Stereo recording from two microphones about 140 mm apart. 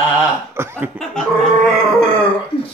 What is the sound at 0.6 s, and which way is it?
Speech, 15° right (ahead or behind).